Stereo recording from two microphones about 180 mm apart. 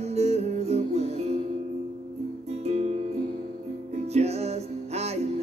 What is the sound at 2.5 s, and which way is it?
Music, 35° right (ahead or behind).